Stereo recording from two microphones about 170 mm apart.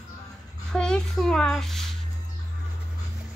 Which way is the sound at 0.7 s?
5° left (ahead or behind).